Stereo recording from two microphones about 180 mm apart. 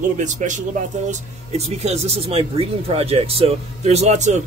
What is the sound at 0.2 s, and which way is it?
Speech, 45° right (ahead or behind).